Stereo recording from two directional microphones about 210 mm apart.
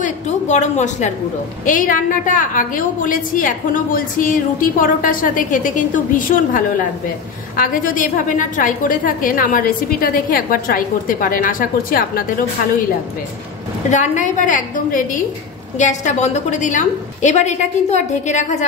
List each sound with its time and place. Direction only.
0.0 s a woman's voice: 35° left (ahead or behind)
13.8 s a woman's voice: 35° left (ahead or behind)